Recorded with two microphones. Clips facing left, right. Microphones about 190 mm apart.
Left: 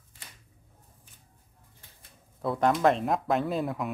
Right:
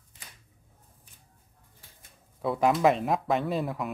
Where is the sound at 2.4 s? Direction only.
Centre (ahead or behind).